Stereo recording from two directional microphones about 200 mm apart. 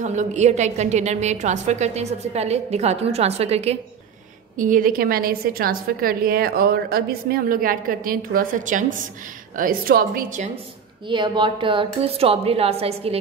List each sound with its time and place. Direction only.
0.0 s a woman's voice: 35° right (ahead or behind)
11.1 s a woman's voice: 25° right (ahead or behind)